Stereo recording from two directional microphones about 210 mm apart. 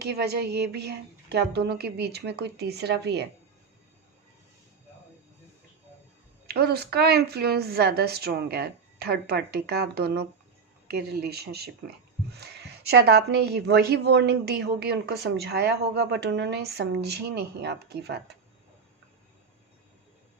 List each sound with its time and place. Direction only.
0.0 s a woman's voice: 50° right (ahead or behind)
6.5 s a woman's voice: 50° right (ahead or behind)
12.9 s a woman's voice: 50° right (ahead or behind)